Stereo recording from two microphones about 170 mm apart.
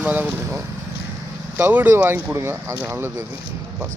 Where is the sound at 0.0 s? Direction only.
10° right (ahead or behind).